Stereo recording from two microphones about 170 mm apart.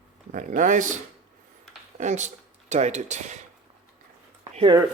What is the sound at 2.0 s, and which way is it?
Speech, 45° right (ahead or behind).